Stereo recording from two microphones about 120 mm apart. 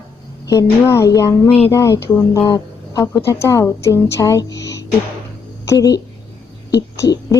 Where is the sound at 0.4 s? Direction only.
25° left (ahead or behind).